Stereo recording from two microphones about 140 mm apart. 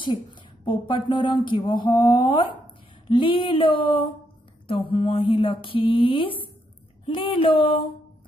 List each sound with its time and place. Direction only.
0.0 s speech: 35° left (ahead or behind)